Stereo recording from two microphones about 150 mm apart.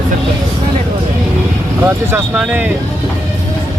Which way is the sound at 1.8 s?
10° right (ahead or behind).